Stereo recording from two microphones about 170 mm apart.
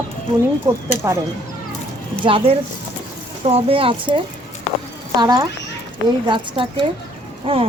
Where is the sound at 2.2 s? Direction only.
30° right (ahead or behind).